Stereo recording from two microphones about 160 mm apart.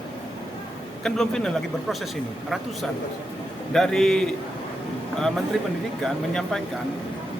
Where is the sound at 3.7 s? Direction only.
5° left (ahead or behind).